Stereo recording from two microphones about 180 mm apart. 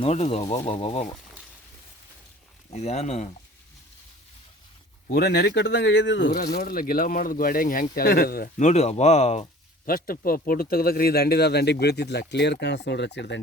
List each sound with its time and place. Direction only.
0.0 s speech: 35° left (ahead or behind)
2.7 s speech: 40° left (ahead or behind)
5.1 s speech: 65° left (ahead or behind); by 6.3 s 85° left
6.3 s speech: 55° left (ahead or behind); by 9.5 s 35° left (ahead or behind)
9.8 s a man's voice: 55° left (ahead or behind); by 13.4 s 70° left (ahead or behind)